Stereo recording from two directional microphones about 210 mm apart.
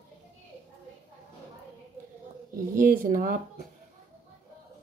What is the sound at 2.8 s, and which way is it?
Speech, 40° right (ahead or behind).